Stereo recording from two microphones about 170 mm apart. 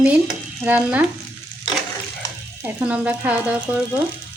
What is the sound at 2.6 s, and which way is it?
Speech, 10° right (ahead or behind).